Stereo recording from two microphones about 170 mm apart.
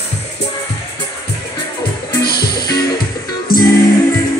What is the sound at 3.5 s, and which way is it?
Music, 60° left (ahead or behind).